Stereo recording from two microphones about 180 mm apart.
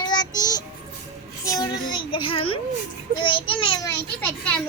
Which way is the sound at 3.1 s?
30° left (ahead or behind).